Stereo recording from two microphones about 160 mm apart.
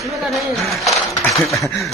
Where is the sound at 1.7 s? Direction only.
20° left (ahead or behind).